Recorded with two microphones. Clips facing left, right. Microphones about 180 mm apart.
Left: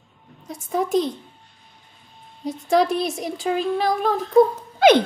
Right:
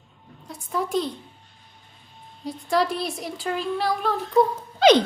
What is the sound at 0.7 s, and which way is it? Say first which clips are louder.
Speech: left 4 dB; 45° left (ahead or behind).